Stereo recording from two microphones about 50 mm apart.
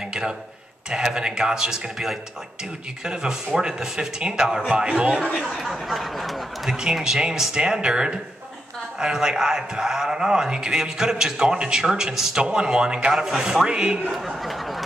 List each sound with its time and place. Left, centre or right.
0.8 s a man's voice: centre
5.6 s a man's voice: centre
13.1 s a man's voice: centre
14.1 s a sound: centre